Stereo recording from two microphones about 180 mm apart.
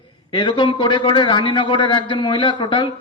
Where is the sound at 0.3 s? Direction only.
25° left (ahead or behind).